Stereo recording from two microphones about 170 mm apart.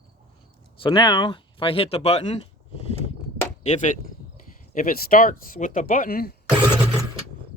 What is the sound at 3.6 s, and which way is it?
Speech, 45° left (ahead or behind).